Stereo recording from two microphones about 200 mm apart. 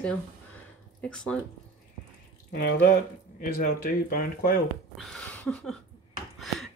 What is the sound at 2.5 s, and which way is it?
Speech, 50° left (ahead or behind).